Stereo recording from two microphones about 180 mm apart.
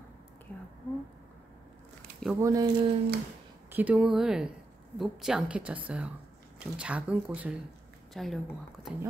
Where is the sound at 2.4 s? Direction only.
20° right (ahead or behind).